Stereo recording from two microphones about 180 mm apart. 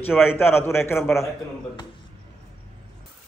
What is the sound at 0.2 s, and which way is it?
Speech, 10° left (ahead or behind).